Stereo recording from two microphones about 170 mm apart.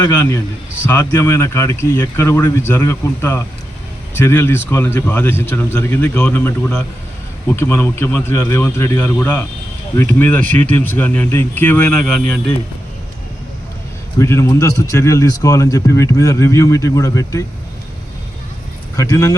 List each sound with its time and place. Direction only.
0.0 s speech: 15° left (ahead or behind)
14.2 s a man's voice: 15° left (ahead or behind)
18.9 s a man's voice: 20° left (ahead or behind)